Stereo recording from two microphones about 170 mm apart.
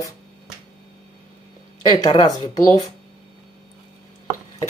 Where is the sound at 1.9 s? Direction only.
25° left (ahead or behind).